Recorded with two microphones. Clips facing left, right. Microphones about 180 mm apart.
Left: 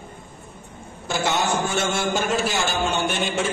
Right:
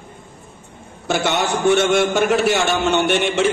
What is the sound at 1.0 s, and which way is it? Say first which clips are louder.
A man's voice: right 4 dB; 70° right (ahead or behind).